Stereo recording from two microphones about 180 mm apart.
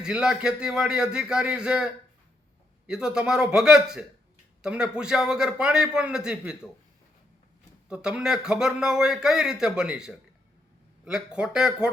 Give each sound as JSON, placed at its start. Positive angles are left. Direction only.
{"t": 0.0, "sound": "a man's voice", "side_deg": -5}
{"t": 7.9, "sound": "a man's voice", "side_deg": -5}